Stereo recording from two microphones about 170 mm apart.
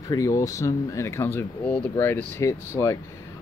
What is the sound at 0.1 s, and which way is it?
Speech, 20° left (ahead or behind).